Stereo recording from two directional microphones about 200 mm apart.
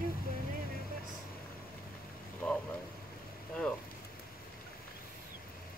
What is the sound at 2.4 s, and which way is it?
Speech, 5° left (ahead or behind).